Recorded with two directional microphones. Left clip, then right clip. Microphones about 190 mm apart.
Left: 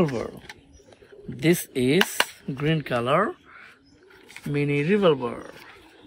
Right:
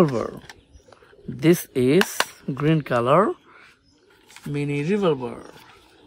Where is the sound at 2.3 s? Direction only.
35° right (ahead or behind); by 5.5 s 15° right (ahead or behind).